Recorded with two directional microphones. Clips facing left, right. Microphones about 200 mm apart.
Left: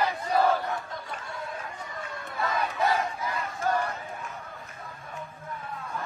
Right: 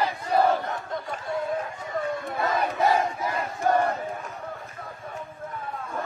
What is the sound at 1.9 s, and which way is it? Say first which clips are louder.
Chatter: right 9 dB; 60° right (ahead or behind).